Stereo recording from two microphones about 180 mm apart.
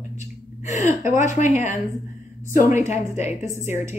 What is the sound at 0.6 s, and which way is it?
A woman's voice, 40° left (ahead or behind).